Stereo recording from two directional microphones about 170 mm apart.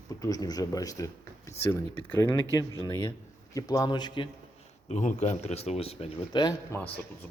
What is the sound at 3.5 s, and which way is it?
Speech, 20° left (ahead or behind).